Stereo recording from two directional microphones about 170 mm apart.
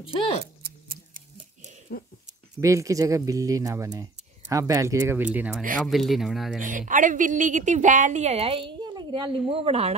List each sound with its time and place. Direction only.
0.7 s a sound: 60° right (ahead or behind)
1.9 s speech: 60° left (ahead or behind)
2.6 s speech: 20° right (ahead or behind); by 6.6 s centre (ahead or behind)
6.9 s a woman's voice: 50° right (ahead or behind)